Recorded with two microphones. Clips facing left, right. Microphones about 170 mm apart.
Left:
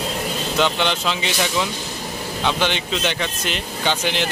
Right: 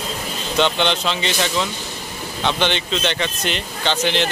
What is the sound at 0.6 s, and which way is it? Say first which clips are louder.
Speech: right 2 dB; 5° left (ahead or behind).